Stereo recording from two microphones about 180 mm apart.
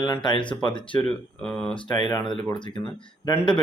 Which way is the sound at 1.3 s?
5° left (ahead or behind).